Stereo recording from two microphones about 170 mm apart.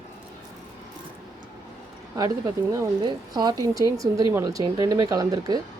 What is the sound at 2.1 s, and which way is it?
Speech, 20° right (ahead or behind).